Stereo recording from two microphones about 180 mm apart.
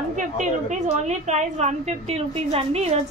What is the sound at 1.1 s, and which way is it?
A woman's voice, 40° right (ahead or behind).